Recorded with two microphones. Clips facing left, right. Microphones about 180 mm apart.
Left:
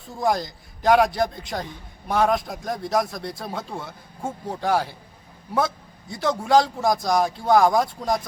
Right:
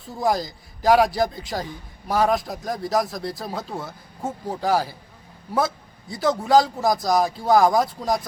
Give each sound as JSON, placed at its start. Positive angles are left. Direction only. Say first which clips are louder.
{"t": 0.2, "sound": "a man's voice", "louder": "even", "side_deg": 0}